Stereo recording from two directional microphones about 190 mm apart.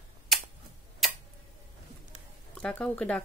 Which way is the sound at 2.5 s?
5° left (ahead or behind).